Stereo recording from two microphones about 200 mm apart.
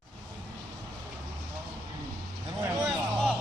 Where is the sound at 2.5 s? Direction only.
15° right (ahead or behind).